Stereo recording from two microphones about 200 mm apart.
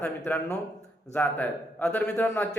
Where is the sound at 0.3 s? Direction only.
10° left (ahead or behind).